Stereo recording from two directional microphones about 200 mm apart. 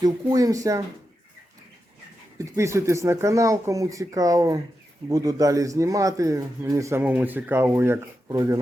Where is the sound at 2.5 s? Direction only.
15° right (ahead or behind).